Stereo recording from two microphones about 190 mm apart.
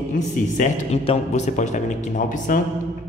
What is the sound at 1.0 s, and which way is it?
A man's voice, 35° left (ahead or behind).